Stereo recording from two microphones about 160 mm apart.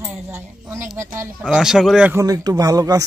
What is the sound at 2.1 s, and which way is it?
Speech, 20° right (ahead or behind).